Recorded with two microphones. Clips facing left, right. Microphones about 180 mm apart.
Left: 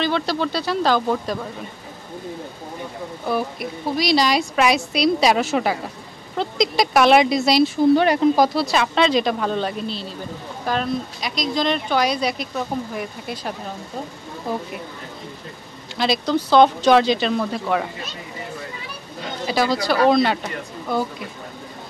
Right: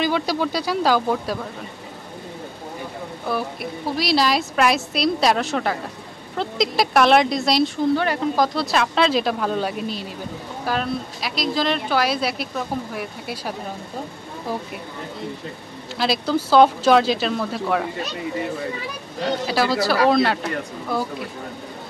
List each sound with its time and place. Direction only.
0.0 s speech: 10° right (ahead or behind)
3.3 s speech: centre (ahead or behind)
7.9 s speech: 15° left (ahead or behind)
8.5 s speech: centre (ahead or behind)
16.0 s speech: 5° right (ahead or behind)
19.4 s speech: 5° right (ahead or behind)